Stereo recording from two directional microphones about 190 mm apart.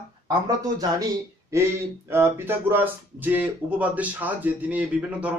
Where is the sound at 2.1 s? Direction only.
10° right (ahead or behind).